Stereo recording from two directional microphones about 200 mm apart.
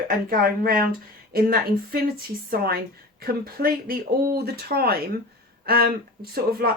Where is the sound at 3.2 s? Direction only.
50° right (ahead or behind).